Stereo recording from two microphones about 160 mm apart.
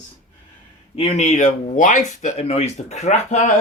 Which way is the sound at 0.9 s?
40° left (ahead or behind).